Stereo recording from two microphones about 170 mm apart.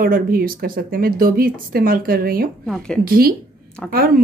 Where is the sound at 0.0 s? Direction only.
60° right (ahead or behind).